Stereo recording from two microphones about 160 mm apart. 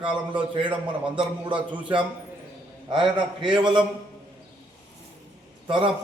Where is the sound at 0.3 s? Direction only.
30° right (ahead or behind).